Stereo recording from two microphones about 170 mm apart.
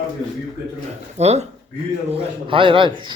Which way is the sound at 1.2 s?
40° right (ahead or behind).